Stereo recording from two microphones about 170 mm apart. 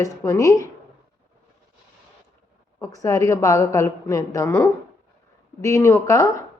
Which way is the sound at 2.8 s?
20° left (ahead or behind).